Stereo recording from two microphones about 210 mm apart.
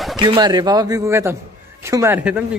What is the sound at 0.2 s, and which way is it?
Speech, 20° right (ahead or behind).